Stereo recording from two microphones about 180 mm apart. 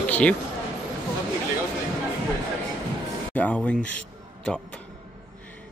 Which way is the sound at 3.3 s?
10° left (ahead or behind).